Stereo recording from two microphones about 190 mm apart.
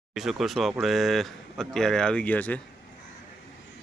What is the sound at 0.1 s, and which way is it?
Speech, centre (ahead or behind).